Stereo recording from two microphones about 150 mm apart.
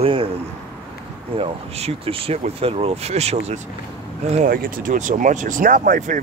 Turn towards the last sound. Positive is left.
turn(degrees=-60)  # may be behind; listen again after turning